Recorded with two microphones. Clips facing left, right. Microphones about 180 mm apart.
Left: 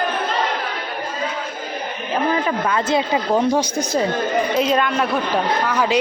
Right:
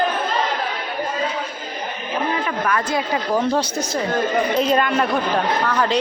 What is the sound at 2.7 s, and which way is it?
Speech, 25° left (ahead or behind).